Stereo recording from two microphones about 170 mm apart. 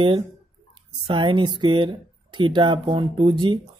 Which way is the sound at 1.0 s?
30° right (ahead or behind).